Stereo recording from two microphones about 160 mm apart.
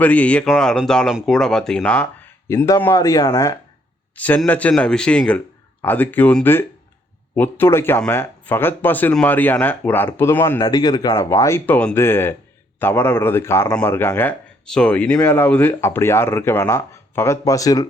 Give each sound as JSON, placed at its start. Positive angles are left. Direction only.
{"t": 0.0, "sound": "speech", "side_deg": 10}
{"t": 4.1, "sound": "speech", "side_deg": 10}
{"t": 10.6, "sound": "speech", "side_deg": 25}